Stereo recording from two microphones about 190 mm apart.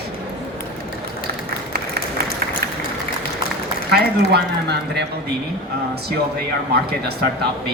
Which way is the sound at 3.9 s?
60° right (ahead or behind).